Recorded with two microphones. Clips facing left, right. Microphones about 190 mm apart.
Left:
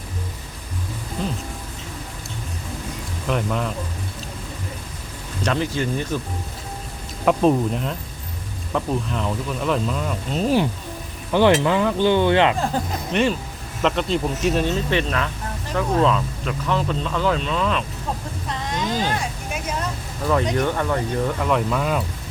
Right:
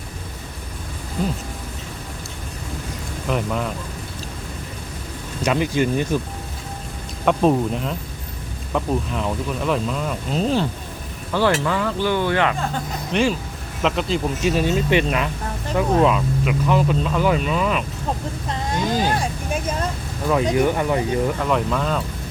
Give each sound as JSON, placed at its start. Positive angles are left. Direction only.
{"t": 3.2, "sound": "speech", "side_deg": 0}
{"t": 5.4, "sound": "speech", "side_deg": -10}
{"t": 7.3, "sound": "speech", "side_deg": 0}
{"t": 11.3, "sound": "speech", "side_deg": 20}
{"t": 13.1, "sound": "speech", "side_deg": 0}
{"t": 14.8, "sound": "speech", "side_deg": -15}
{"t": 18.9, "sound": "speech", "side_deg": -10}
{"t": 20.3, "sound": "speech", "side_deg": -5}